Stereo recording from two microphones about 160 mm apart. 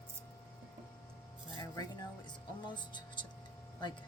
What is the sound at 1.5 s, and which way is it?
Music, 25° left (ahead or behind).